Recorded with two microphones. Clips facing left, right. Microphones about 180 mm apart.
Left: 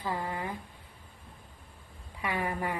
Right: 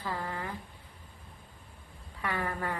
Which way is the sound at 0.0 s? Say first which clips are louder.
Left 2 dB; 15° left (ahead or behind).